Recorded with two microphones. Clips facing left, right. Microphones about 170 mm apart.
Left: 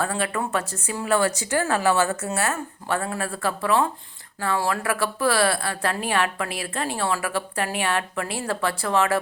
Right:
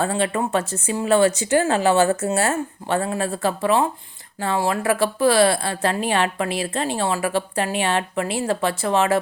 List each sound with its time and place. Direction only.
0.0 s a woman's voice: 25° right (ahead or behind)